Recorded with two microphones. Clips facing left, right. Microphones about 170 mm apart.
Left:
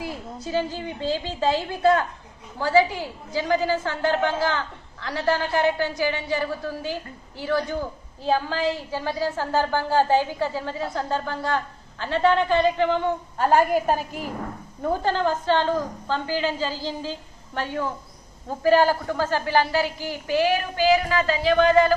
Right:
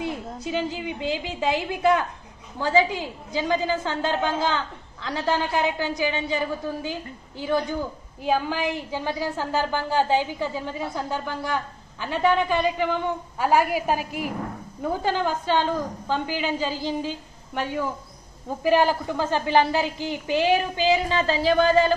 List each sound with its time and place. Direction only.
0.5 s a woman's voice: 20° right (ahead or behind)